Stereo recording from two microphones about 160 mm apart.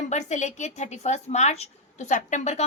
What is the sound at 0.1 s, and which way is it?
A woman's voice, 45° left (ahead or behind).